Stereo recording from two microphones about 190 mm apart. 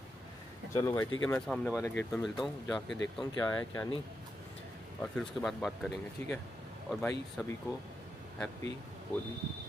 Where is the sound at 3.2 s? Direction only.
20° left (ahead or behind).